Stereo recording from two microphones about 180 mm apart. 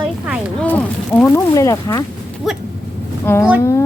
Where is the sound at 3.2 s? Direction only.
15° left (ahead or behind).